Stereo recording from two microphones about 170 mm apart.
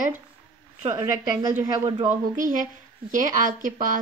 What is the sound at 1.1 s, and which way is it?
Speech, 20° right (ahead or behind).